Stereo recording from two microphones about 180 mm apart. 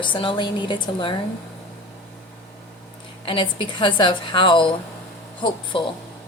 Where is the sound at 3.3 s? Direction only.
30° left (ahead or behind).